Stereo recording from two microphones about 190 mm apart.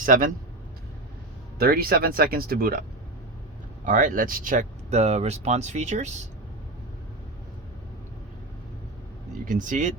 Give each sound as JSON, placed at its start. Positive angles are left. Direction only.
{"t": 0.0, "sound": "speech", "side_deg": -45}
{"t": 1.5, "sound": "speech", "side_deg": -50}
{"t": 3.8, "sound": "speech", "side_deg": -45}
{"t": 9.5, "sound": "speech", "side_deg": -45}